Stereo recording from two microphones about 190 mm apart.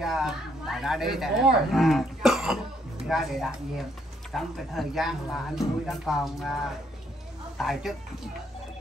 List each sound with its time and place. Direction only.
0.0 s speech: centre (ahead or behind)
7.5 s speech: centre (ahead or behind)